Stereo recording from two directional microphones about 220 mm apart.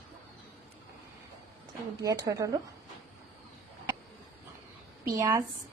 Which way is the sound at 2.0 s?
15° right (ahead or behind).